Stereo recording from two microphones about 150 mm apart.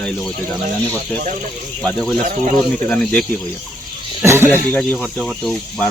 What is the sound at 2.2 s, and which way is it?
Speech, 60° right (ahead or behind).